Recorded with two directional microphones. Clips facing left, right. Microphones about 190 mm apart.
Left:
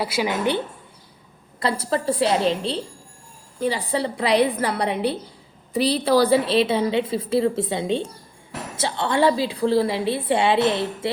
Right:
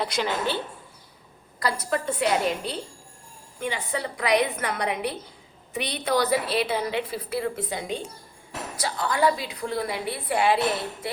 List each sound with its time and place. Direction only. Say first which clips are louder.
0.0 s a woman's voice: left 4 dB; 10° left (ahead or behind)
1.5 s a woman's voice: left 4 dB; 25° left (ahead or behind)